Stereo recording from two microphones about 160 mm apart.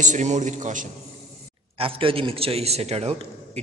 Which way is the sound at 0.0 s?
50° right (ahead or behind).